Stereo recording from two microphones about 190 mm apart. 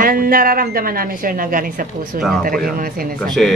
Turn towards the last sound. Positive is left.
turn(degrees=0)  # may be behind; listen again after turning